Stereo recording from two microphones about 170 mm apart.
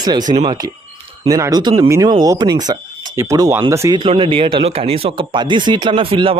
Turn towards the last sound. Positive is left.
turn(degrees=-30)  # may be behind; listen again after turning